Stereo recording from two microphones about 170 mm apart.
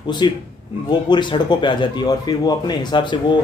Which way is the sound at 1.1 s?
25° left (ahead or behind).